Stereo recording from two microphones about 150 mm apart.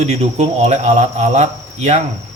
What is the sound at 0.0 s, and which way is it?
Cricket, 45° right (ahead or behind).